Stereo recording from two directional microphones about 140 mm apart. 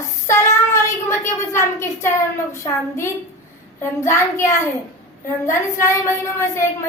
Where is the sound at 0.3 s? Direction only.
20° left (ahead or behind).